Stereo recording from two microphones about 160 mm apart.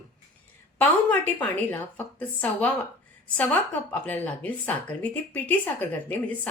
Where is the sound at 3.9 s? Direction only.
10° left (ahead or behind).